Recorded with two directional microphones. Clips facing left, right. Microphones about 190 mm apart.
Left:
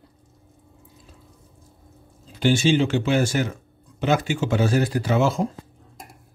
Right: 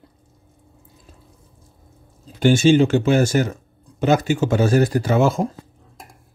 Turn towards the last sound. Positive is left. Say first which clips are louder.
# right 3 dB
turn(degrees=-50)  # may be behind; listen again after turning